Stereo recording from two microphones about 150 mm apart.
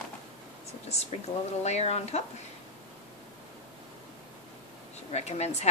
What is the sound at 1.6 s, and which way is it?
Speech, 45° left (ahead or behind).